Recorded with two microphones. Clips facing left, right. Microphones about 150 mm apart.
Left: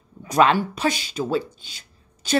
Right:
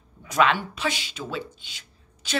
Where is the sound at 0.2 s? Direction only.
40° left (ahead or behind).